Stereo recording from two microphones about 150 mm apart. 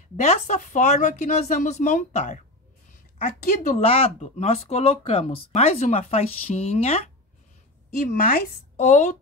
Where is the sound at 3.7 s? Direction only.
40° left (ahead or behind).